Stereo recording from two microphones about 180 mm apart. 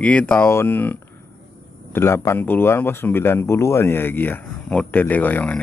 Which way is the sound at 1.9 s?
15° left (ahead or behind).